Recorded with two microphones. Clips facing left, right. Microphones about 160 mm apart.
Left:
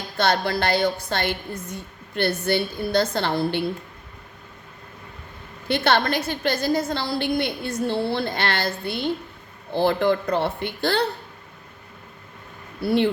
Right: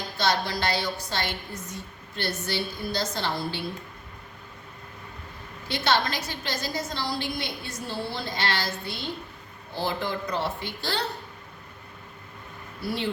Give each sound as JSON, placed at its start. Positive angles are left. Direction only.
{"t": 0.2, "sound": "a woman's voice", "side_deg": 55}
{"t": 5.6, "sound": "a woman's voice", "side_deg": 60}
{"t": 12.8, "sound": "a woman's voice", "side_deg": 60}